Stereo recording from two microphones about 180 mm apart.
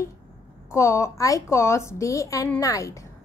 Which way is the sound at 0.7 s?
15° left (ahead or behind).